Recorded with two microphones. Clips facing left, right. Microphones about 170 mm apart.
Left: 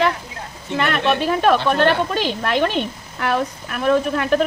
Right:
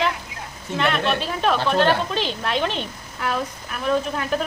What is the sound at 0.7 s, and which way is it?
Speech, 55° left (ahead or behind).